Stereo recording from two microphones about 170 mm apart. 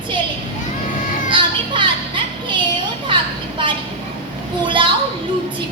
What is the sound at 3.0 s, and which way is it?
Children playing, 30° right (ahead or behind).